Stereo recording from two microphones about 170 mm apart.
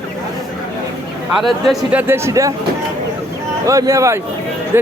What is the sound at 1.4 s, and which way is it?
Speech, centre (ahead or behind).